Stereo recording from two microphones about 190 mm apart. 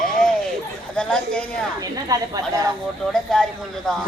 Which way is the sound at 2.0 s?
20° right (ahead or behind).